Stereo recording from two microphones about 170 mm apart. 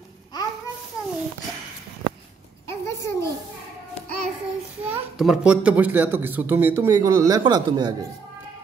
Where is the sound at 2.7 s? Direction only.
15° left (ahead or behind).